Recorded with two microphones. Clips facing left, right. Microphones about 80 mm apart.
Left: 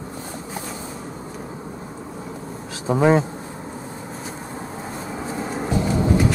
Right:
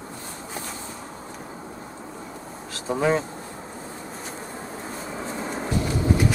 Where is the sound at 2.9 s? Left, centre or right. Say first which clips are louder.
Left 6 dB; left.